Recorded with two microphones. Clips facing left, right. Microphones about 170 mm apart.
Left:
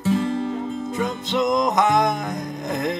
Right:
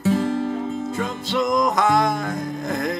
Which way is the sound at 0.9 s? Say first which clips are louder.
Left 1 dB; 20° left (ahead or behind).